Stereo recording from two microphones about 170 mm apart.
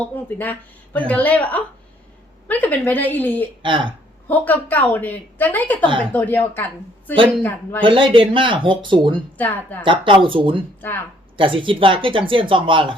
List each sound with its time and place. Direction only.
0.3 s a woman's voice: 10° left (ahead or behind)
3.6 s speech: 30° right (ahead or behind)
4.3 s a woman's voice: 10° left (ahead or behind)
7.8 s speech: 30° right (ahead or behind)
9.4 s a woman's voice: 10° left (ahead or behind)
9.8 s speech: 30° right (ahead or behind)
10.8 s speech: 10° left (ahead or behind)
11.3 s speech: 30° right (ahead or behind)